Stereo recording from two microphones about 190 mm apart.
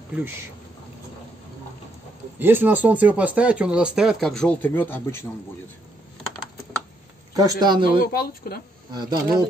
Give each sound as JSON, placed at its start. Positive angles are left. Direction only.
{"t": 0.1, "sound": "speech", "side_deg": -10}
{"t": 2.3, "sound": "speech", "side_deg": -10}
{"t": 7.3, "sound": "speech", "side_deg": -20}
{"t": 8.0, "sound": "speech", "side_deg": 50}
{"t": 8.9, "sound": "speech", "side_deg": -20}